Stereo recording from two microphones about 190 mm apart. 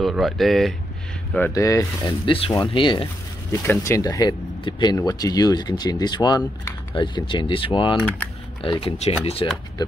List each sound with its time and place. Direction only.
0.0 s speech: centre (ahead or behind)
1.3 s speech: 15° left (ahead or behind)
3.6 s speech: 15° left (ahead or behind); by 9.5 s 30° left (ahead or behind)